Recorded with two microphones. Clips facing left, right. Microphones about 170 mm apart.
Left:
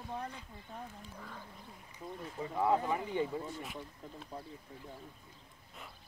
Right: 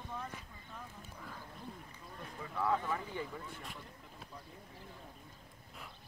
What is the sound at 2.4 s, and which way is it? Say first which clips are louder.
Speech: left 4 dB; 25° left (ahead or behind).